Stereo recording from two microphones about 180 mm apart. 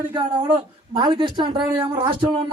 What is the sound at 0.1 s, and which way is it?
A man's voice, 25° right (ahead or behind).